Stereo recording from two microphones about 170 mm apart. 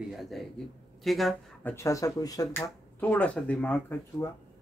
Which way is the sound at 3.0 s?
10° left (ahead or behind).